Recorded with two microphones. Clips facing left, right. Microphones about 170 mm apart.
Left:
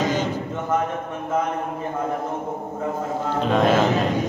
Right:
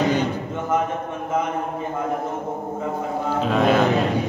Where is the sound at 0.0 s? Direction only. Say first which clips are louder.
Right 2 dB; 60° right (ahead or behind).